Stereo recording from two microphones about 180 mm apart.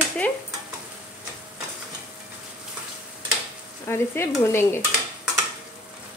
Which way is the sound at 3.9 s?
15° left (ahead or behind).